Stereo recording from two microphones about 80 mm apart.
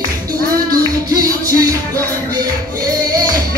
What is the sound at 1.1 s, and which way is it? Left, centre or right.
Music, right.